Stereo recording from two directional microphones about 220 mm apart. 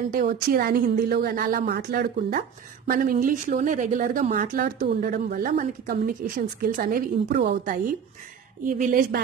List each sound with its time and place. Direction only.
0.1 s speech: 40° right (ahead or behind)